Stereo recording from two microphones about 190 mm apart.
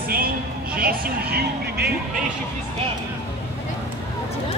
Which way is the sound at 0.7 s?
50° right (ahead or behind).